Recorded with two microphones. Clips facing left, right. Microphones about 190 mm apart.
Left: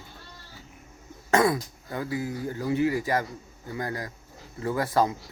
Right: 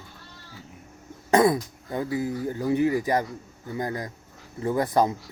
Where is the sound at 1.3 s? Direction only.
20° right (ahead or behind).